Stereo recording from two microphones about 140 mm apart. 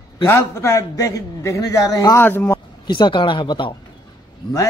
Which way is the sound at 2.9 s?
35° left (ahead or behind).